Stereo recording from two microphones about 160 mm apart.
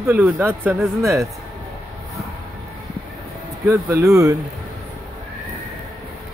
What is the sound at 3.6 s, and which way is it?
Speech, 20° right (ahead or behind).